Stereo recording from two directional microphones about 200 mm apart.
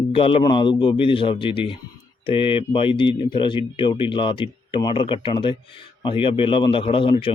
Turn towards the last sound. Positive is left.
turn(degrees=25)  # may be behind; listen again after turning